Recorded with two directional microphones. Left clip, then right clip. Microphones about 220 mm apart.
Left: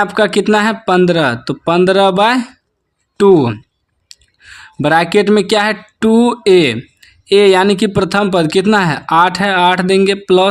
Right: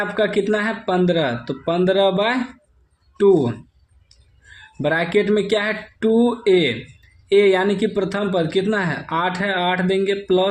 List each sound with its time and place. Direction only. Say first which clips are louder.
0.0 s speech: left 7 dB; 40° left (ahead or behind)
4.8 s speech: left 8 dB; 40° left (ahead or behind)